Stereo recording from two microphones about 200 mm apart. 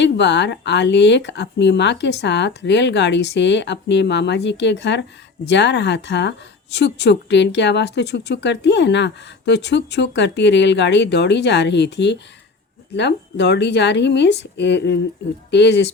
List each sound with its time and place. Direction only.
0.0 s a woman's voice: 60° left (ahead or behind)